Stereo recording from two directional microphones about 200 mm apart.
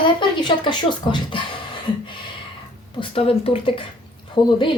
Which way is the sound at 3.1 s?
30° left (ahead or behind).